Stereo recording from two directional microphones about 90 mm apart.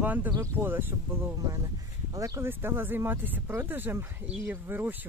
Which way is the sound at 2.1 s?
35° right (ahead or behind).